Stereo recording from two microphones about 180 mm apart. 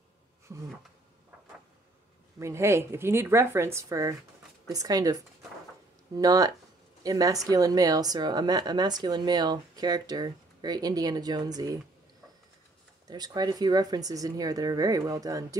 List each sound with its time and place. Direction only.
0.5 s insect: 15° right (ahead or behind)
2.3 s a woman's voice: 15° right (ahead or behind)
13.1 s a woman's voice: 20° right (ahead or behind)